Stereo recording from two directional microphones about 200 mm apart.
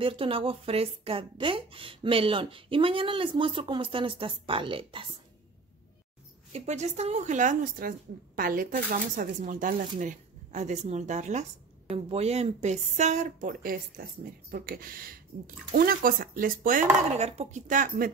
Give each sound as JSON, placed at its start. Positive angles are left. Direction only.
{"t": 0.0, "sound": "a woman's voice", "side_deg": -25}
{"t": 6.5, "sound": "speech", "side_deg": -35}